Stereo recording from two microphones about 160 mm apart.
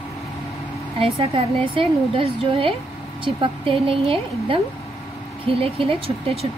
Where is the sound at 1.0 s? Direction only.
35° right (ahead or behind).